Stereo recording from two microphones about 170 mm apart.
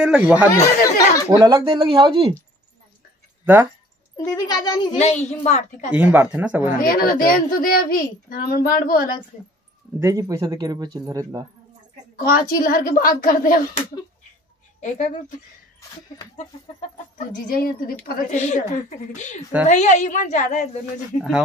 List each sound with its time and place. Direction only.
0.0 s speech: 5° right (ahead or behind)
0.5 s chatter: 20° left (ahead or behind)
1.4 s speech: 25° right (ahead or behind)
4.2 s a child's voice: 20° left (ahead or behind)
4.9 s a woman's voice: 40° left (ahead or behind)
5.9 s speech: 10° right (ahead or behind)
6.8 s a child's voice: 60° left (ahead or behind)
9.9 s speech: 20° right (ahead or behind)
12.3 s a child's voice: 60° left (ahead or behind)
14.8 s speech: 45° left (ahead or behind)
17.6 s a child's voice: 55° left (ahead or behind)